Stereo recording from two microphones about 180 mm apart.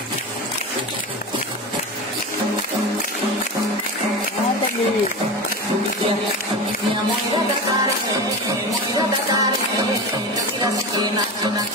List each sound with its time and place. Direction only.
8.9 s music: 20° right (ahead or behind)